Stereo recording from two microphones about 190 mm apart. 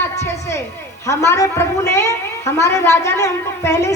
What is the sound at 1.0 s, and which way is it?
A woman's voice, 15° left (ahead or behind).